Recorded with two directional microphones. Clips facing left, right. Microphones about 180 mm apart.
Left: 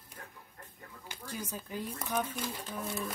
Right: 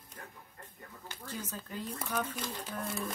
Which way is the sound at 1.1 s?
10° left (ahead or behind).